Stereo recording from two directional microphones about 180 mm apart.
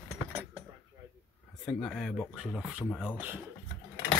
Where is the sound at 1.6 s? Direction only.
5° left (ahead or behind).